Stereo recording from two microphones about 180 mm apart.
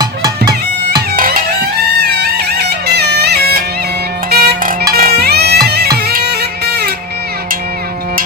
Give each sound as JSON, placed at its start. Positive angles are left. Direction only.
{"t": 0.0, "sound": "bagpipes", "side_deg": -20}
{"t": 1.1, "sound": "music", "side_deg": -50}
{"t": 2.0, "sound": "music", "side_deg": -60}